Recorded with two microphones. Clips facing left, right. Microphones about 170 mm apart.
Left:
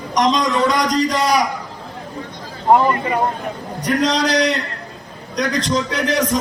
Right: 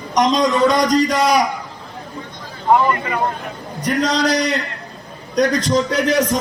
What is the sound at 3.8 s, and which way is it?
A man's voice, centre (ahead or behind).